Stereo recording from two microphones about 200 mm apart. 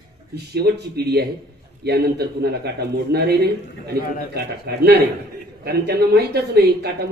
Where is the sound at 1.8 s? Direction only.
55° right (ahead or behind).